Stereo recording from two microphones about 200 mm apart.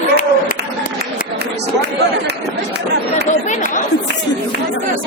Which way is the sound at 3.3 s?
40° left (ahead or behind).